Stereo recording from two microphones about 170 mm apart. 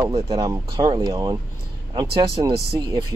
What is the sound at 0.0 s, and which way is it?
Speech, 20° right (ahead or behind).